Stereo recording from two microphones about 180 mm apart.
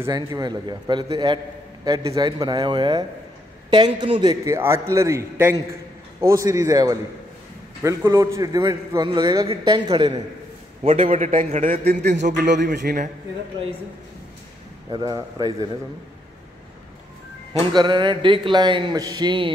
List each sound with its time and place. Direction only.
0.0 s a man's voice: 20° right (ahead or behind)
11.0 s a man's voice: 45° right (ahead or behind); by 12.2 s 65° right (ahead or behind)
12.4 s a man's voice: 75° right (ahead or behind)
12.7 s a man's voice: 55° right (ahead or behind)
14.9 s speech: 20° right (ahead or behind)
17.6 s speech: 25° right (ahead or behind)